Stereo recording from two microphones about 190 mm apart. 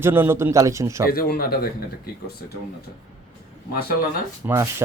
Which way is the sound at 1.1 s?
50° left (ahead or behind).